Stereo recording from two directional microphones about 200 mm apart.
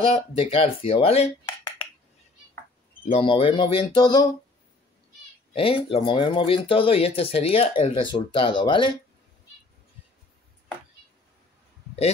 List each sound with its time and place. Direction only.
0.0 s speech: 30° left (ahead or behind)
3.1 s speech: 30° left (ahead or behind)
5.5 s speech: 25° left (ahead or behind)